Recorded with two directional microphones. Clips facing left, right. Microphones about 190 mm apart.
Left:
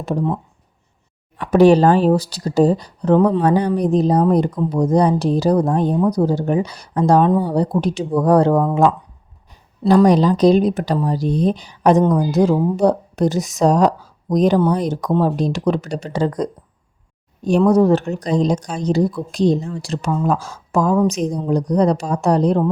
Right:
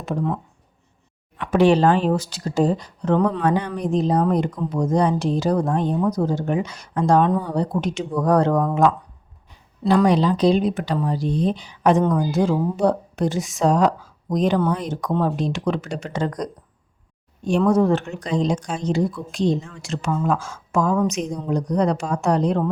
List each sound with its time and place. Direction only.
0.0 s speech: 35° left (ahead or behind)
1.4 s speech: 40° left (ahead or behind)
9.5 s speech: 40° left (ahead or behind)